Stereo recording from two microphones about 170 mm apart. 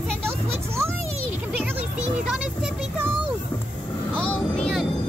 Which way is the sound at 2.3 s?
5° right (ahead or behind).